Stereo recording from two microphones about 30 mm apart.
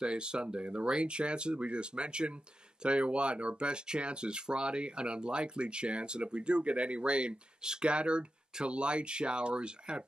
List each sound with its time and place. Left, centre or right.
0.0 s speech: right
7.6 s speech: right
7.9 s speech: right